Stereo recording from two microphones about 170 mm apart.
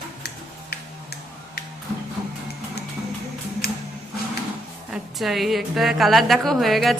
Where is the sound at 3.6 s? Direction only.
65° left (ahead or behind).